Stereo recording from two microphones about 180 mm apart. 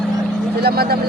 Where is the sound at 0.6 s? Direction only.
60° right (ahead or behind).